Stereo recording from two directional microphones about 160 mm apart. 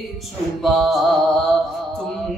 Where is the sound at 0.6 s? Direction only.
Centre (ahead or behind).